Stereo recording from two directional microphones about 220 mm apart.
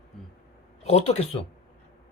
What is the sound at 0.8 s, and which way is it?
Speech, 30° left (ahead or behind).